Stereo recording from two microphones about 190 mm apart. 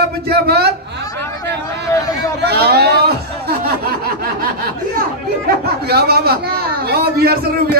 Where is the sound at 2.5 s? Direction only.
60° right (ahead or behind).